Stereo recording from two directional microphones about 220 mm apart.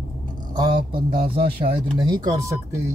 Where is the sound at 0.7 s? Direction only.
40° right (ahead or behind).